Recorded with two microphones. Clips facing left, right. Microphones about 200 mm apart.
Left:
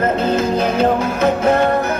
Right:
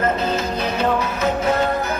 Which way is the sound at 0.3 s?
50° left (ahead or behind).